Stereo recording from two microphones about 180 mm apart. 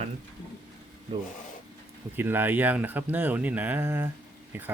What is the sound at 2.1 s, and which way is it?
Speech, 10° right (ahead or behind).